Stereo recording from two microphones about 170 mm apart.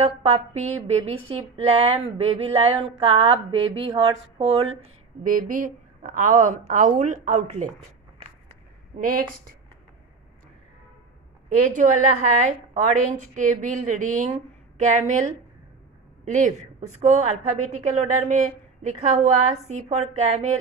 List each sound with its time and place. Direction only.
0.0 s a sound: 40° right (ahead or behind)
5.2 s a woman's voice: 55° right (ahead or behind)
9.0 s speech: 60° right (ahead or behind)
11.7 s a woman's voice: 50° right (ahead or behind)
16.3 s a woman's voice: 45° right (ahead or behind)